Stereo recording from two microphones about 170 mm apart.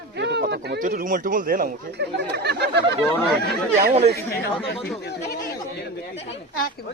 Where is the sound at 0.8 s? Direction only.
55° right (ahead or behind); by 3.9 s 70° right (ahead or behind).